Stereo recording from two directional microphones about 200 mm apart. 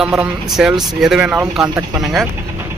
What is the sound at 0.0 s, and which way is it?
Speech, 5° right (ahead or behind).